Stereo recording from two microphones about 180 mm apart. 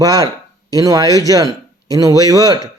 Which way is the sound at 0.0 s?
20° right (ahead or behind).